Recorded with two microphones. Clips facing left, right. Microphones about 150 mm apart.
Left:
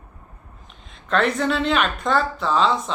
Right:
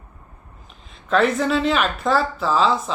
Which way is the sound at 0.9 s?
Centre (ahead or behind).